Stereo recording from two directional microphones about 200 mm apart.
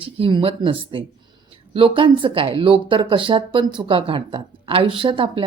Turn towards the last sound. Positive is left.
turn(degrees=-25)  # may be behind; listen again after turning